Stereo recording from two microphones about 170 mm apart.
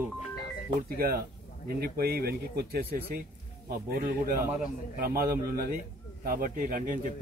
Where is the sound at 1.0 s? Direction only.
60° right (ahead or behind).